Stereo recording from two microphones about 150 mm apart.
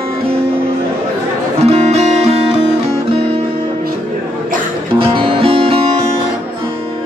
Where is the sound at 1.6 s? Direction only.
45° right (ahead or behind).